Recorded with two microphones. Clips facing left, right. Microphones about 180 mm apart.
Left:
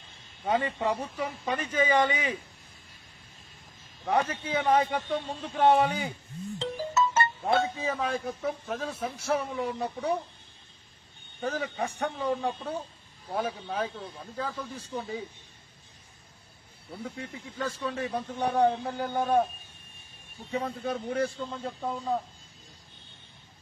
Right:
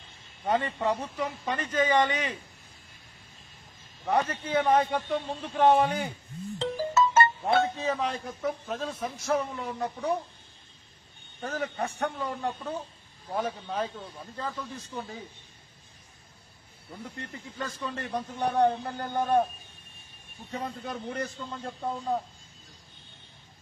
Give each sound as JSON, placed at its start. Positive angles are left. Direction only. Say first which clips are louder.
{"t": 0.5, "sound": "a man's voice", "louder": "even", "side_deg": 10}
{"t": 4.3, "sound": "a man's voice", "louder": "right 1 dB", "side_deg": 10}
{"t": 6.6, "sound": "music", "louder": "right 3 dB", "side_deg": -60}
{"t": 7.4, "sound": "a man's voice", "louder": "right 1 dB", "side_deg": 10}
{"t": 11.4, "sound": "a man's voice", "louder": "left 1 dB", "side_deg": 10}
{"t": 17.0, "sound": "a man's voice", "louder": "left 2 dB", "side_deg": 5}
{"t": 20.5, "sound": "a man's voice", "louder": "left 4 dB", "side_deg": 5}